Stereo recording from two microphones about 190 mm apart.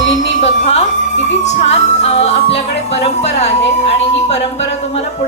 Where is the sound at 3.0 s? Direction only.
35° left (ahead or behind).